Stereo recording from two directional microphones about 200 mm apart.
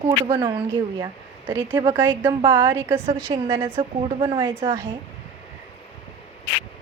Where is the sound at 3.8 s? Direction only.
25° right (ahead or behind).